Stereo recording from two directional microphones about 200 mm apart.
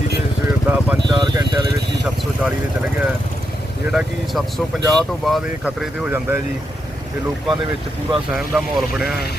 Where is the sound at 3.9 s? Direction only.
Centre (ahead or behind).